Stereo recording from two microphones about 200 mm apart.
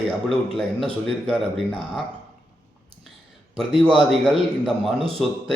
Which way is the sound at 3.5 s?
Centre (ahead or behind).